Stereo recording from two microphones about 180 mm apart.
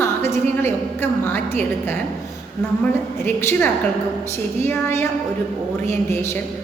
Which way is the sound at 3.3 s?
15° left (ahead or behind).